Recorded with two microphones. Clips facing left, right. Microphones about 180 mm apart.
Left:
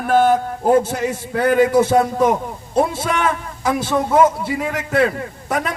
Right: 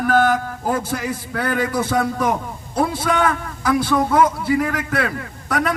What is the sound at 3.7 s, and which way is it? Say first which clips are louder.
A man's voice: right 1 dB; 25° left (ahead or behind).